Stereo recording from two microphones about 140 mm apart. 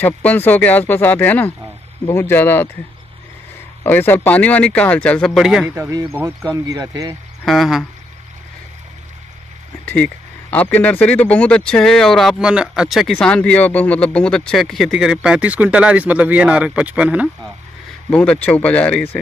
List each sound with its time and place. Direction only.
0.0 s speech: 10° left (ahead or behind)
3.8 s speech: 15° left (ahead or behind); by 5.7 s centre (ahead or behind)
5.8 s speech: 20° right (ahead or behind)
7.4 s speech: centre (ahead or behind)
10.5 s speech: 10° left (ahead or behind); by 17.3 s 10° right (ahead or behind)
18.1 s speech: 10° left (ahead or behind)